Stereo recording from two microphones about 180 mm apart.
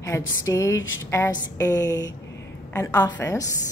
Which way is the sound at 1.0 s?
15° left (ahead or behind).